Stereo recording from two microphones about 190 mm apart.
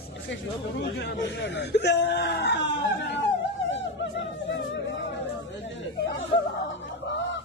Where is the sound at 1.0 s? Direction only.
65° left (ahead or behind).